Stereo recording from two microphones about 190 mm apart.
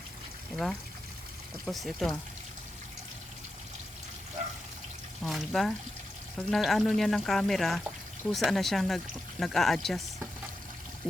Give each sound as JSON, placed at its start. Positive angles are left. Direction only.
{"t": 0.5, "sound": "speech", "side_deg": 0}
{"t": 5.2, "sound": "speech", "side_deg": 0}
{"t": 11.0, "sound": "pour", "side_deg": 0}